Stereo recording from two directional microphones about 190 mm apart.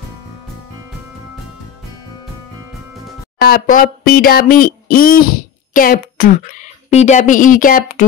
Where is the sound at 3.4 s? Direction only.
50° left (ahead or behind).